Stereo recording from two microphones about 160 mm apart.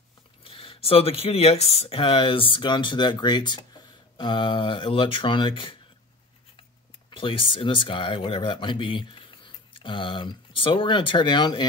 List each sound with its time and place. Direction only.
0.4 s speech: 35° left (ahead or behind)
7.1 s speech: 30° left (ahead or behind)